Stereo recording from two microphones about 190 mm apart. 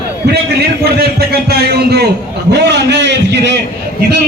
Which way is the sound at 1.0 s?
55° right (ahead or behind).